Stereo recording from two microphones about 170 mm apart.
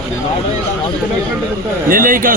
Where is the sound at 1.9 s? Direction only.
55° right (ahead or behind).